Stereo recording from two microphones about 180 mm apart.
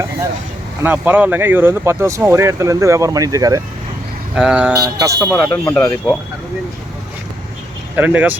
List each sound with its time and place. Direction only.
0.8 s speech: 10° right (ahead or behind)
4.4 s speech: 5° right (ahead or behind)
5.5 s speech: 10° left (ahead or behind)
7.9 s speech: 10° right (ahead or behind)